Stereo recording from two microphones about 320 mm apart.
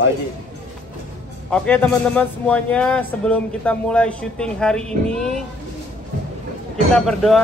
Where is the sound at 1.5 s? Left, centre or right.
Centre.